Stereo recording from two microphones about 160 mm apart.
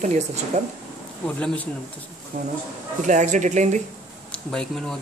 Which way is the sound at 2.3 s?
55° right (ahead or behind).